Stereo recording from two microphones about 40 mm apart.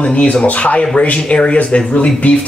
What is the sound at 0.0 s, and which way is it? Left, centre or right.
Speech, left.